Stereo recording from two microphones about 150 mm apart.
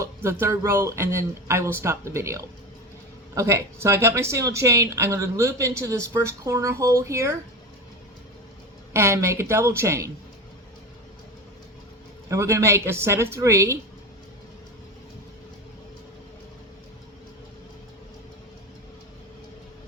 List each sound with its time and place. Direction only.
0.0 s a woman's voice: 15° right (ahead or behind)
8.9 s a woman's voice: 20° right (ahead or behind)
12.3 s a woman's voice: 20° right (ahead or behind)